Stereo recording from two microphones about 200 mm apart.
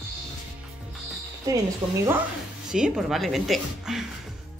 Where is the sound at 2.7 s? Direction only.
Centre (ahead or behind).